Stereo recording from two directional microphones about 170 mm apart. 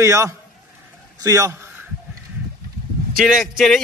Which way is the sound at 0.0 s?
15° right (ahead or behind).